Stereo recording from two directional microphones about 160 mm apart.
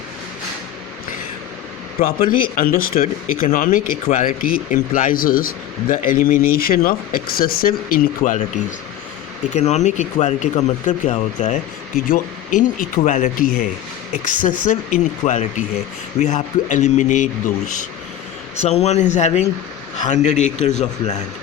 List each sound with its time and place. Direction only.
2.0 s speech: 70° left (ahead or behind); by 8.4 s 50° left (ahead or behind)
9.6 s speech: 45° left (ahead or behind)